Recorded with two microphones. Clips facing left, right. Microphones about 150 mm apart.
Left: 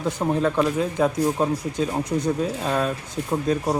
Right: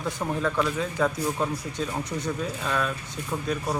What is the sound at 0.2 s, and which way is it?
Speech, 20° left (ahead or behind).